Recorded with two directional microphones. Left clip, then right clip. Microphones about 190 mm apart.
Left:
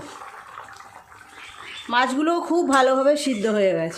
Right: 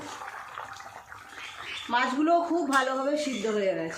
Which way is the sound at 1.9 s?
55° left (ahead or behind).